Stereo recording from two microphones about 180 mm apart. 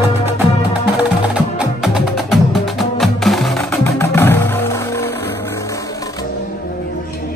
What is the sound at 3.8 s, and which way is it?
Music, 10° left (ahead or behind).